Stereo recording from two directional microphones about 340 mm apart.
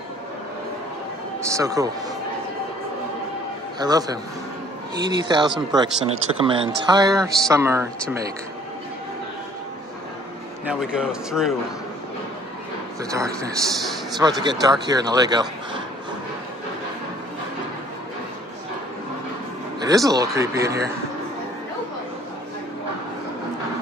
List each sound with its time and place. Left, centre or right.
1.5 s speech: centre
3.8 s speech: centre
5.2 s speech: centre
10.6 s a man's voice: centre
13.1 s speech: centre
19.8 s speech: centre